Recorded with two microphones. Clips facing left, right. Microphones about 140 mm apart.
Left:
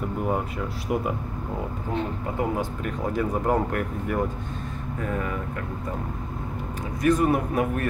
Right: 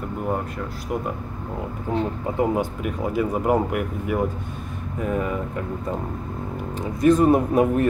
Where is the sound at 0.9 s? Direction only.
5° left (ahead or behind).